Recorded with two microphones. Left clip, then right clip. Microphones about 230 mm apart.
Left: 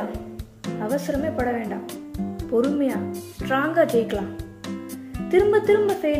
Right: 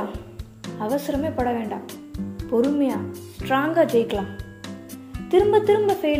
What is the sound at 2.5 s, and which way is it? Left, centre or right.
A woman's voice, centre.